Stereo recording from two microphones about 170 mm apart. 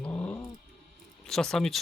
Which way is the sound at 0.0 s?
10° left (ahead or behind).